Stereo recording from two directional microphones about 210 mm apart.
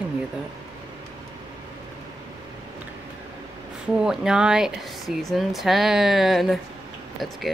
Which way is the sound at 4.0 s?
5° right (ahead or behind).